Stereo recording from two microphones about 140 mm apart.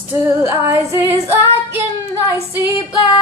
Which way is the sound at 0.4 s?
20° right (ahead or behind).